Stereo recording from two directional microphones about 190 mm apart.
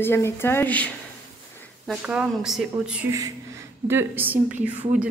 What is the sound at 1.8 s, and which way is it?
Speech, 5° right (ahead or behind).